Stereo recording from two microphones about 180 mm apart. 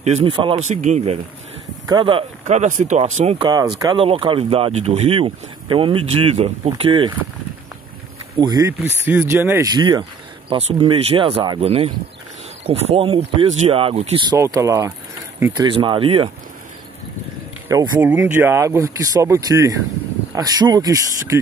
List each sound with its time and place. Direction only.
0.0 s speech: 35° right (ahead or behind)
0.7 s speech: 40° right (ahead or behind)
1.9 s speech: 25° right (ahead or behind)
2.4 s speech: 40° right (ahead or behind)
3.4 s speech: 20° right (ahead or behind)
8.4 s speech: 20° right (ahead or behind)
14.3 s speech: 15° right (ahead or behind)
17.6 s speech: 15° right (ahead or behind)